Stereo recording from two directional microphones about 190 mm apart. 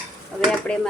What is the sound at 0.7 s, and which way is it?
Speech, 5° left (ahead or behind).